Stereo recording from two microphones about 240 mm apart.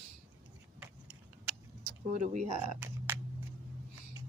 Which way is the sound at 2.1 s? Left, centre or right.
Right.